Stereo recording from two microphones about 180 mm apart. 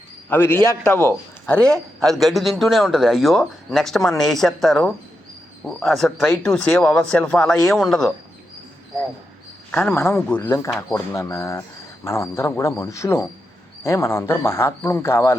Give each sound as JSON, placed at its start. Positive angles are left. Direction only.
{"t": 0.3, "sound": "a man's voice", "side_deg": 10}
{"t": 6.2, "sound": "a man's voice", "side_deg": 15}
{"t": 9.7, "sound": "speech", "side_deg": 10}